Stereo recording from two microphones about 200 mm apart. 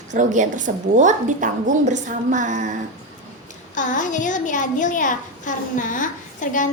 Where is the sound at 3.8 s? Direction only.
40° left (ahead or behind).